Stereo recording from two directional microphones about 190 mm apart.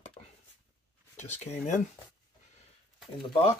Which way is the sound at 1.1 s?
40° left (ahead or behind).